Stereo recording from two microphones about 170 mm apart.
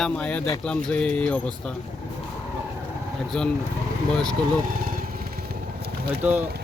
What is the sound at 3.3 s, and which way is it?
Speech, 5° left (ahead or behind).